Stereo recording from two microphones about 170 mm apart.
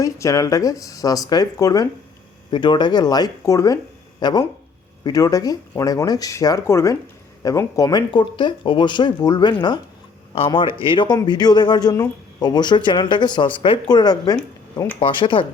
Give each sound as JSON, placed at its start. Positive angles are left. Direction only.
{"t": 0.0, "sound": "speech", "side_deg": 20}